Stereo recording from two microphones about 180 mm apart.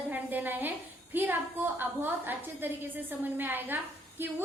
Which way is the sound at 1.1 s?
10° right (ahead or behind).